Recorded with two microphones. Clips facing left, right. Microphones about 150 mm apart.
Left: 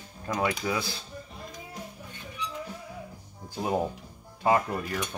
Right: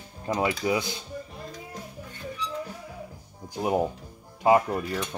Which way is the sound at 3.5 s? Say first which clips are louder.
Right 3 dB; 15° right (ahead or behind).